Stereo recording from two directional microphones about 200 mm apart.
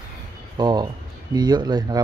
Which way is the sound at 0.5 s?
20° right (ahead or behind).